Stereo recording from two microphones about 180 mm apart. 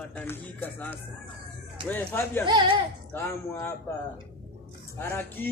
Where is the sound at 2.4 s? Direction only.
25° right (ahead or behind).